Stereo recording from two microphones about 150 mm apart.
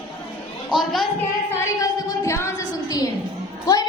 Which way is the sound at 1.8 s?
20° left (ahead or behind).